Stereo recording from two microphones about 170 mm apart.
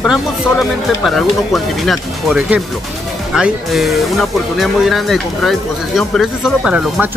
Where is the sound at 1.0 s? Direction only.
Centre (ahead or behind).